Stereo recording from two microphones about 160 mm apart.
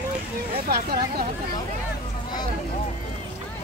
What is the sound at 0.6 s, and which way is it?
Speech, 75° right (ahead or behind).